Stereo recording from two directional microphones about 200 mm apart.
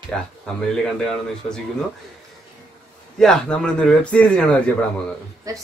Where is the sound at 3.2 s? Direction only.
5° left (ahead or behind).